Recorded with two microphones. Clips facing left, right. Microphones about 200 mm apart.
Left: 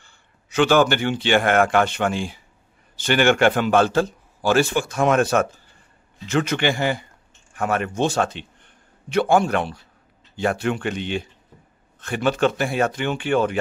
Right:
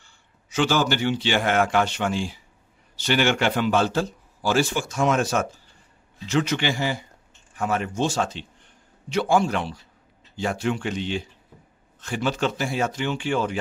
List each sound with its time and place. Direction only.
0.0 s a man's voice: 60° left (ahead or behind)